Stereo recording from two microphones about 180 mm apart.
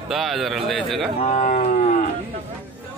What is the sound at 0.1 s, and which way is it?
Cattle, centre (ahead or behind).